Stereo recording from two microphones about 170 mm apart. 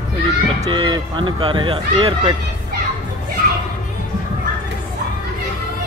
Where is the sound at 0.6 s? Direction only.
25° right (ahead or behind).